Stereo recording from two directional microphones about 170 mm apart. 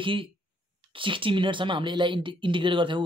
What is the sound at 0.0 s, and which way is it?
Speech, 30° right (ahead or behind).